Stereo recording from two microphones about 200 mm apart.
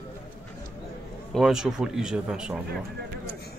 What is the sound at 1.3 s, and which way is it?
Speech, centre (ahead or behind).